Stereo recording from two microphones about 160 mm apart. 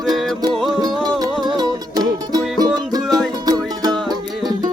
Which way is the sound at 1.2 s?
25° right (ahead or behind).